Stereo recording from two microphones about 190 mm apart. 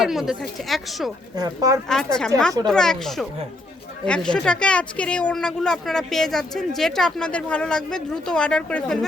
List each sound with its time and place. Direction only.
0.0 s speech: centre (ahead or behind)
1.4 s speech: 15° right (ahead or behind)
1.9 s speech: 5° left (ahead or behind)